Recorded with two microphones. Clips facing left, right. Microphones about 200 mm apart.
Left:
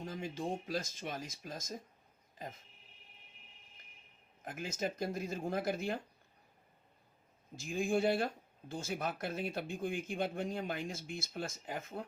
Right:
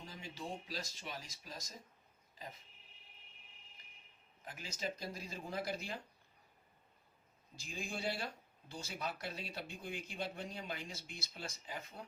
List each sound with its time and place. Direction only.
0.0 s speech: 50° left (ahead or behind)
4.4 s speech: 50° left (ahead or behind)
7.5 s speech: 50° left (ahead or behind)